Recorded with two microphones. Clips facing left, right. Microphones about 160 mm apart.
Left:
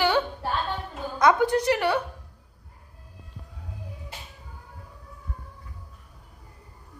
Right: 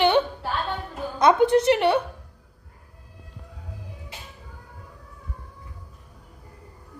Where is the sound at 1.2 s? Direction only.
25° right (ahead or behind).